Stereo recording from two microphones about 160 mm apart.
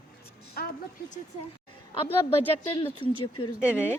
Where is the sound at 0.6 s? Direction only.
65° left (ahead or behind).